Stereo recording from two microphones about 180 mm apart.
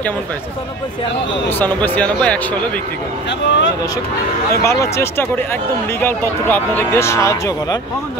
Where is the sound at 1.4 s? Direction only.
10° left (ahead or behind).